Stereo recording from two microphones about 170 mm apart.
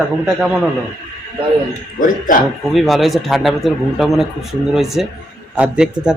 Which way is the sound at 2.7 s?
Centre (ahead or behind).